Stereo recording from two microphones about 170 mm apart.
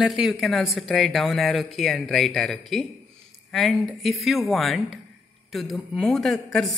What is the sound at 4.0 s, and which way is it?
Speech, centre (ahead or behind).